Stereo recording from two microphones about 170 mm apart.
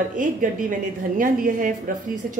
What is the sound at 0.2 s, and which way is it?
A woman's voice, 50° right (ahead or behind).